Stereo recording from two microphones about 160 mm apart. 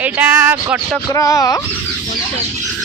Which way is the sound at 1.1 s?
20° left (ahead or behind).